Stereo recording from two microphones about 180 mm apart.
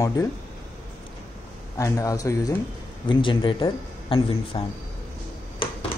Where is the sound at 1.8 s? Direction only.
20° left (ahead or behind).